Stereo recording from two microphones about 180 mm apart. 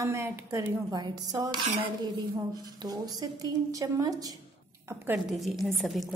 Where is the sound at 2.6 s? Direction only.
20° right (ahead or behind).